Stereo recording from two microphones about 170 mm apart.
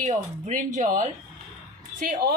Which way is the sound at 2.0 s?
65° right (ahead or behind).